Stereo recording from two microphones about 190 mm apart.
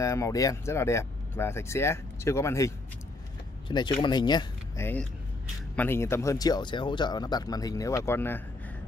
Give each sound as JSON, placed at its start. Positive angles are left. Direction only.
{"t": 0.0, "sound": "speech", "side_deg": 15}